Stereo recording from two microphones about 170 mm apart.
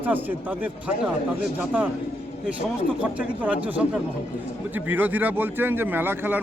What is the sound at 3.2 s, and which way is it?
A man's voice, 10° right (ahead or behind).